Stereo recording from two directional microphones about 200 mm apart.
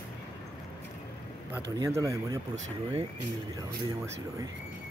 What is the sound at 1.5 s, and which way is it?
Speech, 15° right (ahead or behind).